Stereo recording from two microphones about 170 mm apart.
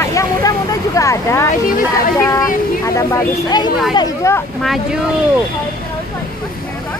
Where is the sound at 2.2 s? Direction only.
15° left (ahead or behind).